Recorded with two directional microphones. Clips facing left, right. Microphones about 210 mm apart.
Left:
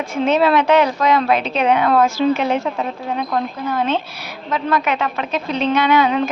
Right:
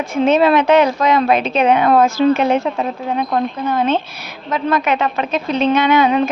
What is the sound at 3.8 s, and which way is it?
Speech, 20° right (ahead or behind).